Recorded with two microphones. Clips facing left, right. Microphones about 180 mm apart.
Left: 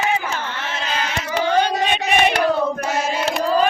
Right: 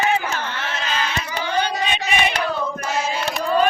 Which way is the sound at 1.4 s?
55° left (ahead or behind).